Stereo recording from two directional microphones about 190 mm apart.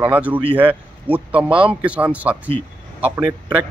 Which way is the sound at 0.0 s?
10° right (ahead or behind).